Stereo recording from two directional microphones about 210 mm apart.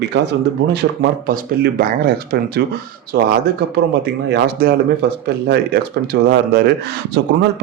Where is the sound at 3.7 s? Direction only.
50° right (ahead or behind).